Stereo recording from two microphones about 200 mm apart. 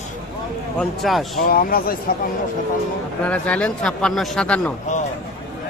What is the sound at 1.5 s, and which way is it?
Speech, 45° left (ahead or behind).